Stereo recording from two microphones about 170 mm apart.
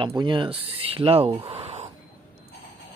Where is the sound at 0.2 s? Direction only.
30° right (ahead or behind).